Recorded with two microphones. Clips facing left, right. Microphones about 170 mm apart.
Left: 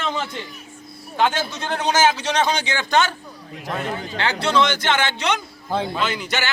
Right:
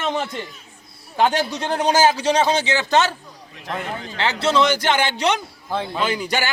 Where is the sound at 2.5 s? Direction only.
30° right (ahead or behind).